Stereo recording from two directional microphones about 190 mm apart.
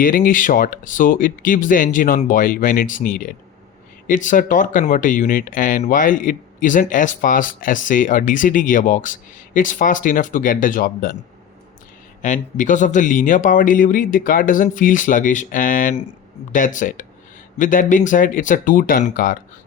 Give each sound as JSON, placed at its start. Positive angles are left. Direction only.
{"t": 0.0, "sound": "speech", "side_deg": 45}
{"t": 12.2, "sound": "speech", "side_deg": 40}